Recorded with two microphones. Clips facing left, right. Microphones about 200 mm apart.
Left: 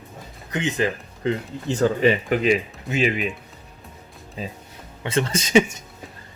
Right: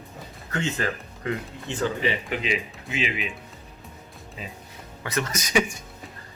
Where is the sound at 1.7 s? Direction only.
45° left (ahead or behind).